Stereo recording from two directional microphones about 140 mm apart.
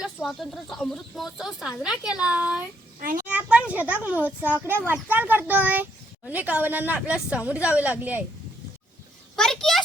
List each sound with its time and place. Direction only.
0.2 s a child's voice: centre (ahead or behind)
3.0 s a child's voice: 90° right
3.2 s a child's voice: 10° right (ahead or behind)
9.3 s speech: 5° left (ahead or behind)